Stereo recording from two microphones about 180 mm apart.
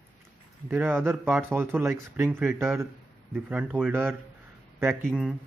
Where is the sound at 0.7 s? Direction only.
10° right (ahead or behind).